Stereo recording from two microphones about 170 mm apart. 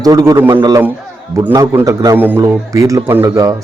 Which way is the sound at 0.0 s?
20° right (ahead or behind).